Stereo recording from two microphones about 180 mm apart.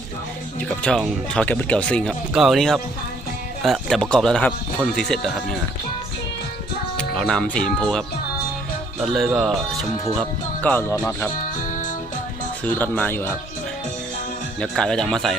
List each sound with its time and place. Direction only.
0.6 s speech: 5° left (ahead or behind)
6.9 s speech: 5° left (ahead or behind)
9.1 s speech: centre (ahead or behind); by 11.3 s 20° left (ahead or behind)
12.6 s speech: 10° left (ahead or behind)
14.6 s speech: 5° left (ahead or behind)